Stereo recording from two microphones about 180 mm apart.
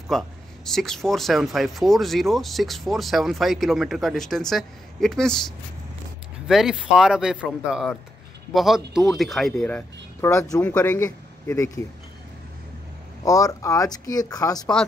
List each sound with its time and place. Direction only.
0.1 s speech: centre (ahead or behind)
6.4 s speech: 5° right (ahead or behind); by 11.8 s 15° left (ahead or behind)
13.2 s speech: 20° left (ahead or behind)